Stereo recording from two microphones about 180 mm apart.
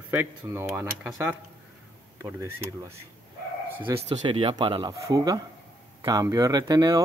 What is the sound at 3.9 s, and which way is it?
Speech, 25° right (ahead or behind).